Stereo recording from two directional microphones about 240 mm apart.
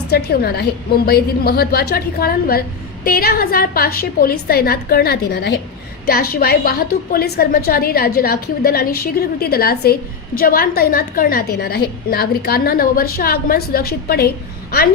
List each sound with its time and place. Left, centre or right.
0.1 s a woman's voice: left